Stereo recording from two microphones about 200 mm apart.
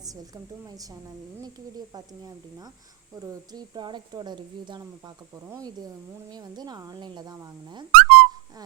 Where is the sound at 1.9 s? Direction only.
20° right (ahead or behind).